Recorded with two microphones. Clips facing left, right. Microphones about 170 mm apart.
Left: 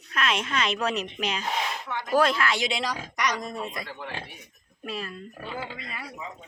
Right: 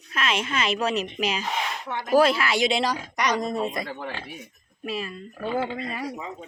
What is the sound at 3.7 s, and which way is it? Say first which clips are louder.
Speech: right 5 dB; 50° right (ahead or behind).